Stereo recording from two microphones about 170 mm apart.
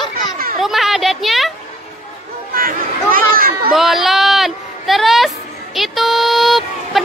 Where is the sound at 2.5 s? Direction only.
55° right (ahead or behind).